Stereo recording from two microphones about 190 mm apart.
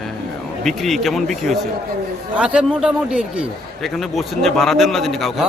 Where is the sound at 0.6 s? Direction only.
Centre (ahead or behind).